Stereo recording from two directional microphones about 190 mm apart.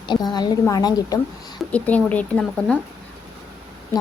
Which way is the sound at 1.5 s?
5° left (ahead or behind).